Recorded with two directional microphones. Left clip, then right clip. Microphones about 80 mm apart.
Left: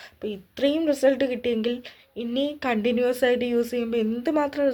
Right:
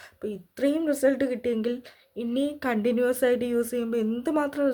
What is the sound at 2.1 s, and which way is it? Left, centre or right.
Speech, right.